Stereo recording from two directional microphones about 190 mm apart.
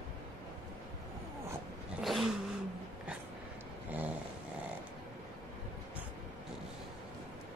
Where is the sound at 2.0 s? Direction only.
Centre (ahead or behind).